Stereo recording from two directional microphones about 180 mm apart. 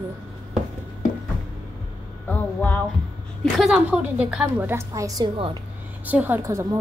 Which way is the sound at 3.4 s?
5° right (ahead or behind).